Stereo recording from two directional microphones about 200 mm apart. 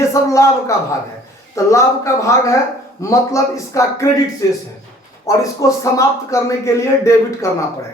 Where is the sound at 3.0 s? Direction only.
15° left (ahead or behind).